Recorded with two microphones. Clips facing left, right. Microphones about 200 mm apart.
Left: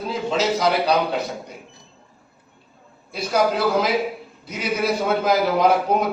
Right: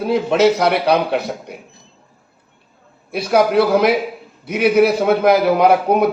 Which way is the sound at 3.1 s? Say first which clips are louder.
Right 5 dB; 65° right (ahead or behind).